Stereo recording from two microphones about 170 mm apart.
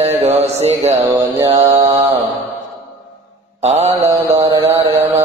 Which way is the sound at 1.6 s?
35° right (ahead or behind).